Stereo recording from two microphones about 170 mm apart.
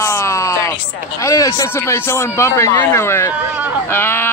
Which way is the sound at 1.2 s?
20° left (ahead or behind).